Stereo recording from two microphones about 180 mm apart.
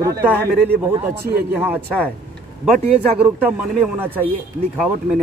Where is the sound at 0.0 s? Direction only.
15° right (ahead or behind).